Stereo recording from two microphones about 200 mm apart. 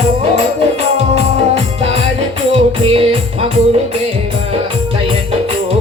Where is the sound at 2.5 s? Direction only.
30° right (ahead or behind).